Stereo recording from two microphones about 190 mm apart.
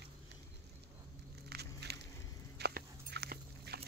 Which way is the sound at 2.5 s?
60° right (ahead or behind).